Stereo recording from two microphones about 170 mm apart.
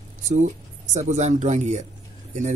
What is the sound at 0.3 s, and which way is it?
Speech, 45° right (ahead or behind).